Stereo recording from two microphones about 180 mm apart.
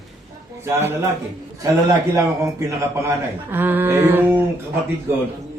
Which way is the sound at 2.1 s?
15° right (ahead or behind).